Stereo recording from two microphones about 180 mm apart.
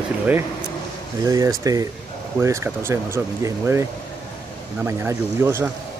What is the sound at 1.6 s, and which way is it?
Speech, 20° right (ahead or behind).